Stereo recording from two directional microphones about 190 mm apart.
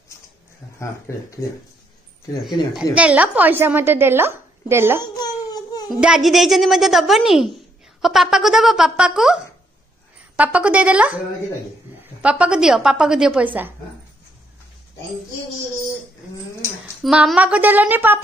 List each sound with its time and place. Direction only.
1.1 s speech: 15° left (ahead or behind)
2.6 s a woman's voice: 25° left (ahead or behind)
3.0 s a woman's voice: 5° right (ahead or behind)
5.0 s baby cry: 20° left (ahead or behind)
5.9 s a child's voice: 5° right (ahead or behind)
12.2 s a child's voice: 5° right (ahead or behind)
17.0 s a woman's voice: centre (ahead or behind)